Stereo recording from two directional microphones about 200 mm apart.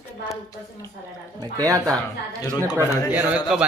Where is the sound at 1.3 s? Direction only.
20° right (ahead or behind).